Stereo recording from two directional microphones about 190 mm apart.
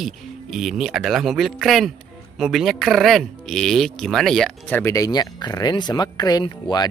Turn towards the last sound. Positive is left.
turn(degrees=20)  # may be behind; listen again after turning